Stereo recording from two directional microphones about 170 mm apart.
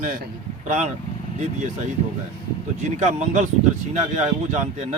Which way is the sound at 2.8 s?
45° right (ahead or behind).